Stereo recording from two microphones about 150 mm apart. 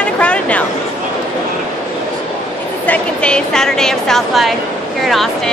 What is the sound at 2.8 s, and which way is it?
A woman's voice, 10° left (ahead or behind).